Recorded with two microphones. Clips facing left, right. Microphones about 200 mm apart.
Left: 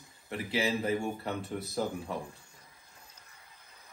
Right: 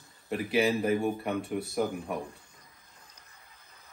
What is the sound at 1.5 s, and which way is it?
Speech, 15° right (ahead or behind).